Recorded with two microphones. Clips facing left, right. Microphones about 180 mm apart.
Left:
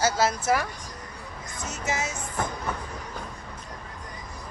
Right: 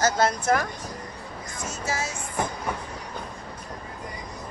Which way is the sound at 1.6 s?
20° left (ahead or behind).